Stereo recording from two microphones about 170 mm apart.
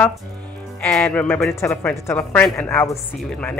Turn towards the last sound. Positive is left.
turn(degrees=5)  # may be behind; listen again after turning